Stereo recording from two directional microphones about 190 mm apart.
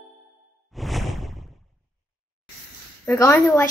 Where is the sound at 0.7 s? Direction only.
Centre (ahead or behind).